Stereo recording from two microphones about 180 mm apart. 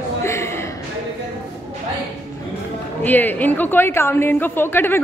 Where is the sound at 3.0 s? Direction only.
10° left (ahead or behind).